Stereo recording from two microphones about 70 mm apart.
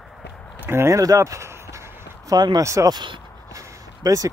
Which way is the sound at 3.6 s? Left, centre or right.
Right.